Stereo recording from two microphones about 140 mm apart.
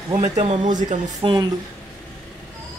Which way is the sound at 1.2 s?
35° right (ahead or behind).